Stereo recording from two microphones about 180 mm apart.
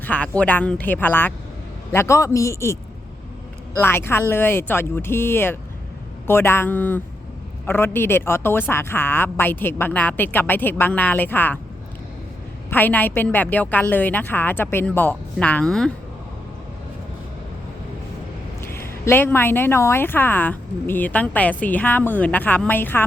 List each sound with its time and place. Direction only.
0.0 s speech: 10° left (ahead or behind)
3.8 s speech: 10° left (ahead or behind)
12.7 s speech: 10° left (ahead or behind)
18.6 s speech: 15° left (ahead or behind)